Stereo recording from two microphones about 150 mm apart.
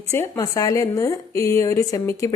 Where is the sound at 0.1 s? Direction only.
20° left (ahead or behind).